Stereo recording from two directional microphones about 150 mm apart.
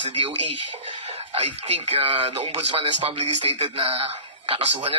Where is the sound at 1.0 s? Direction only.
40° right (ahead or behind).